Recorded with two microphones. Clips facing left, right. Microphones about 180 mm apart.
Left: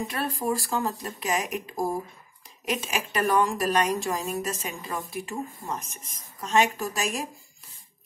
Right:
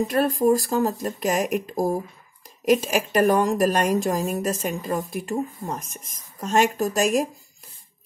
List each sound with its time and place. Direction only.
0.1 s a woman's voice: 40° right (ahead or behind)
6.4 s a woman's voice: 45° right (ahead or behind)